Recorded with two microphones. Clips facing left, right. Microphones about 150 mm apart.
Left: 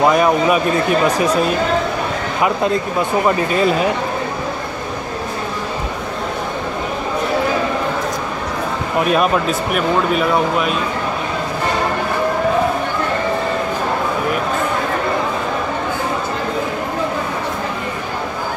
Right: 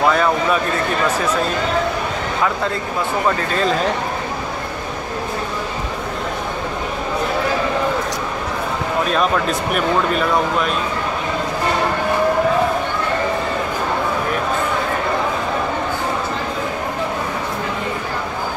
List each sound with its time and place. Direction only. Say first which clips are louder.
0.0 s a man's voice: left 3 dB; 15° left (ahead or behind)
2.4 s a man's voice: left 5 dB; 15° left (ahead or behind)
9.1 s speech: left 3 dB; 10° left (ahead or behind)